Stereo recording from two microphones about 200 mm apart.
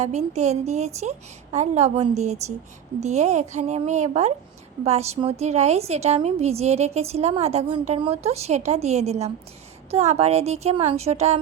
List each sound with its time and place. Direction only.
0.0 s a woman's voice: 35° right (ahead or behind)